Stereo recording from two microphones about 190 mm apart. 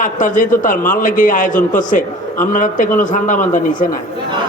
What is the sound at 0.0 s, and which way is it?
A man's voice, 45° left (ahead or behind).